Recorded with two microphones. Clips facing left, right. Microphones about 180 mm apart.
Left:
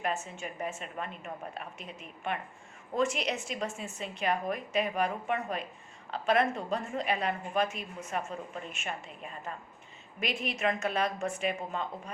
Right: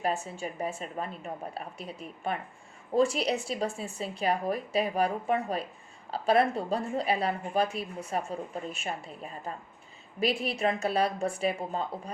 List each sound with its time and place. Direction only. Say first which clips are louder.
0.0 s a woman's voice: right 3 dB; 35° right (ahead or behind)